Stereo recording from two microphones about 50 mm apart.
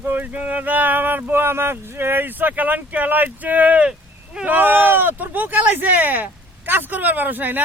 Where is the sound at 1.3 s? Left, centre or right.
Right.